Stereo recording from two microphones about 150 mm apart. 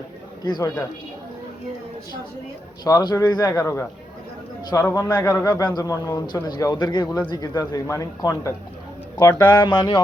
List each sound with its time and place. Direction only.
0.4 s a man's voice: 30° left (ahead or behind)
2.8 s a man's voice: 25° left (ahead or behind)